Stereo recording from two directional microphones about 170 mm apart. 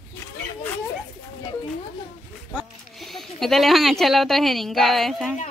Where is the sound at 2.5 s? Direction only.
Centre (ahead or behind).